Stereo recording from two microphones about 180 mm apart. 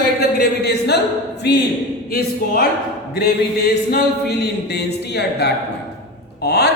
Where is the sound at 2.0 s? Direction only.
55° left (ahead or behind).